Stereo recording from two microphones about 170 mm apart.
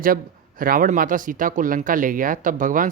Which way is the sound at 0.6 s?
55° right (ahead or behind).